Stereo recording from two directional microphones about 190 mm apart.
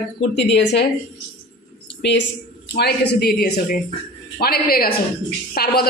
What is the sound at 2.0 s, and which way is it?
Speech, 65° left (ahead or behind).